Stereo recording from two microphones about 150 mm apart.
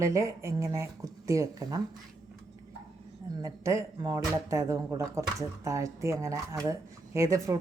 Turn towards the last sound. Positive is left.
turn(degrees=-20)  # may be behind; listen again after turning